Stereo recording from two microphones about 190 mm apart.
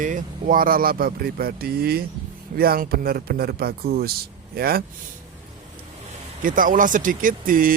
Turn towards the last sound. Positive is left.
turn(degrees=-45)  # may be behind; listen again after turning